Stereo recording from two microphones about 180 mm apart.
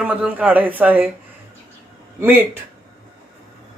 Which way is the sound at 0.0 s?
10° right (ahead or behind).